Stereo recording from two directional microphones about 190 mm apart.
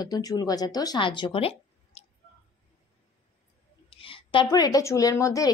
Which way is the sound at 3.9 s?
30° left (ahead or behind).